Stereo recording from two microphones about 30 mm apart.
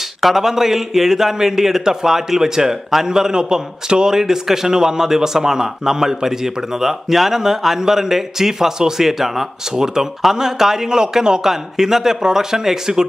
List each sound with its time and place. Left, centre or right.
0.2 s a man's voice: centre